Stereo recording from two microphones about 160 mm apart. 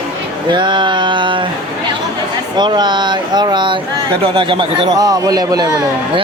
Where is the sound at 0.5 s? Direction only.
30° right (ahead or behind).